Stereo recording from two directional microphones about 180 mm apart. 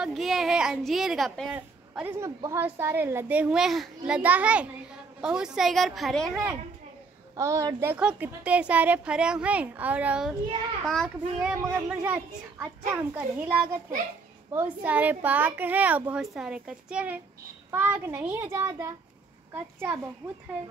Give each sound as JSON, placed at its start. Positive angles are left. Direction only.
{"t": 0.0, "sound": "speech", "side_deg": 0}
{"t": 1.5, "sound": "a woman's voice", "side_deg": -10}
{"t": 7.3, "sound": "a woman's voice", "side_deg": -15}
{"t": 11.5, "sound": "a woman's voice", "side_deg": -15}